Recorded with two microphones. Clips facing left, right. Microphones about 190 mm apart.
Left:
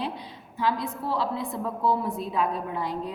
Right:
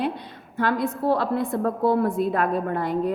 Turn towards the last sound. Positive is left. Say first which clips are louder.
# right 7 dB
turn(degrees=-55)  # may be behind; listen again after turning